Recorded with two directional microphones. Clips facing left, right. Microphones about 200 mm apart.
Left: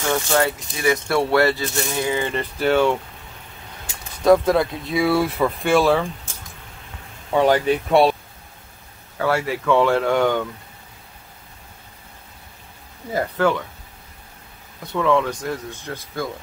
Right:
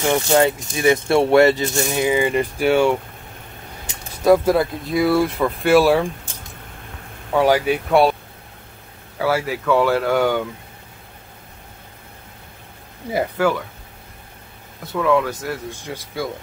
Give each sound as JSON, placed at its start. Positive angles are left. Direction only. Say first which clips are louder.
{"t": 0.0, "sound": "speech", "louder": "right 4 dB", "side_deg": -20}
{"t": 4.2, "sound": "speech", "louder": "right 1 dB", "side_deg": -5}
{"t": 7.3, "sound": "speech", "louder": "even", "side_deg": -10}
{"t": 9.2, "sound": "speech", "louder": "right 1 dB", "side_deg": 0}
{"t": 13.1, "sound": "speech", "louder": "right 1 dB", "side_deg": -5}
{"t": 14.9, "sound": "speech", "louder": "right 1 dB", "side_deg": -5}